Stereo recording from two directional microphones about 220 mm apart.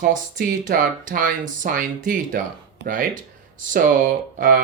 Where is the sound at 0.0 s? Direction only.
35° right (ahead or behind).